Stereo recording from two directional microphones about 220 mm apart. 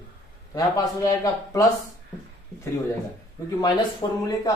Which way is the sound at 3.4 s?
15° left (ahead or behind).